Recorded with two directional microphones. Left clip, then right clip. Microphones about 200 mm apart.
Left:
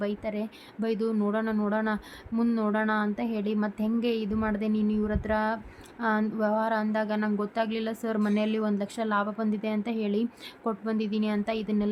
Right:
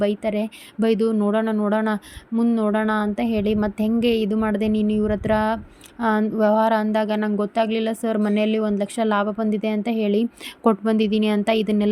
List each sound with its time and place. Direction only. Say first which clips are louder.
0.0 s speech: right 10 dB; 25° right (ahead or behind)